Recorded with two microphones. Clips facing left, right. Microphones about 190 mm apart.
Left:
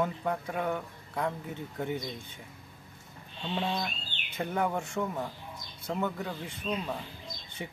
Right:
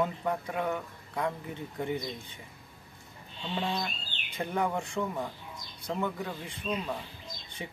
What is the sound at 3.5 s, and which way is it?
Speech, centre (ahead or behind).